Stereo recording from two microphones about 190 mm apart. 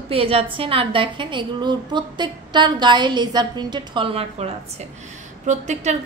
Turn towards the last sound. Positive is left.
turn(degrees=-40)  # may be behind; listen again after turning